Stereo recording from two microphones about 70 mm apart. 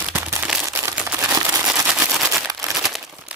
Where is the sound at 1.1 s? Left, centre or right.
Centre.